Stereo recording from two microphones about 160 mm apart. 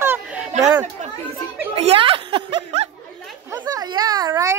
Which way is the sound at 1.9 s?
35° right (ahead or behind).